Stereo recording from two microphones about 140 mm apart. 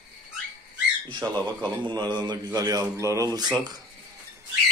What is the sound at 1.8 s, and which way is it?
A man's voice, 30° right (ahead or behind).